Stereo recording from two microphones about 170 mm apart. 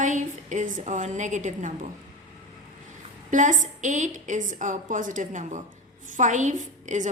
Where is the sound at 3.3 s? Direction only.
50° right (ahead or behind).